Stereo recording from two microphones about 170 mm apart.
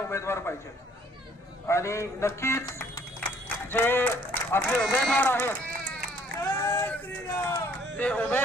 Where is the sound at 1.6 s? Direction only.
15° left (ahead or behind).